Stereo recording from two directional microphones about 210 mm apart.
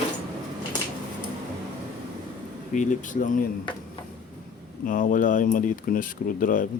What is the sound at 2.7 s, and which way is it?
Speech, 35° left (ahead or behind).